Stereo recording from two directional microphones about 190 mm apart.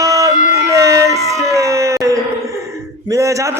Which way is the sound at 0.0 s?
15° right (ahead or behind).